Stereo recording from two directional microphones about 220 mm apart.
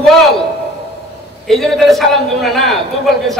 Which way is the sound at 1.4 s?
Centre (ahead or behind).